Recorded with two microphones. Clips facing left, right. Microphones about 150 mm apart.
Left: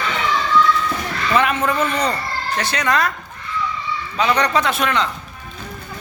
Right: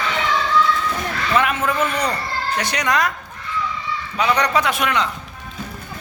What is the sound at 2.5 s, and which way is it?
Speech, 15° right (ahead or behind).